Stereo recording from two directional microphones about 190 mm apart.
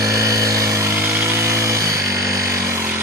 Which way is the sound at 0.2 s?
15° right (ahead or behind).